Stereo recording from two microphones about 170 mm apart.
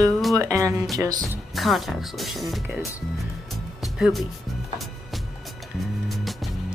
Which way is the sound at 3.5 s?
Centre (ahead or behind).